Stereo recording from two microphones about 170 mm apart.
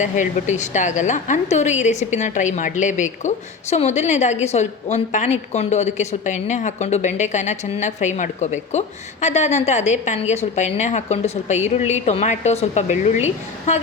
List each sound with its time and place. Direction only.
0.0 s a woman's voice: 45° left (ahead or behind)